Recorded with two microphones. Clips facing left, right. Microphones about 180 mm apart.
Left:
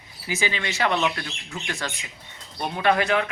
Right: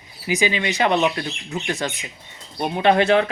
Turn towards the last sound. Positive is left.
turn(degrees=-30)  # may be behind; listen again after turning